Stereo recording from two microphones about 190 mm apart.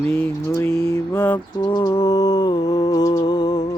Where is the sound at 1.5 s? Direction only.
20° left (ahead or behind).